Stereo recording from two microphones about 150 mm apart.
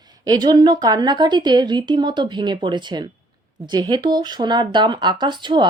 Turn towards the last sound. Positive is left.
turn(degrees=-30)  # may be behind; listen again after turning